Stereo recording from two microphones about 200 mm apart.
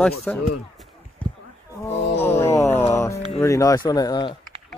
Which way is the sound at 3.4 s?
15° left (ahead or behind).